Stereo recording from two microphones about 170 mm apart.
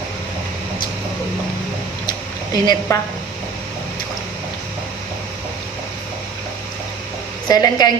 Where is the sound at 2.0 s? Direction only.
25° left (ahead or behind).